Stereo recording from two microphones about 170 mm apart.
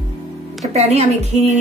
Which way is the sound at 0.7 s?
40° right (ahead or behind).